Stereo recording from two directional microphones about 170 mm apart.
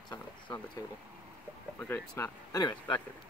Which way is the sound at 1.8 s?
10° left (ahead or behind).